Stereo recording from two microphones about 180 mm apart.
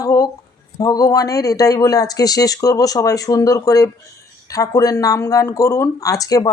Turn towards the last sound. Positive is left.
turn(degrees=20)  # may be behind; listen again after turning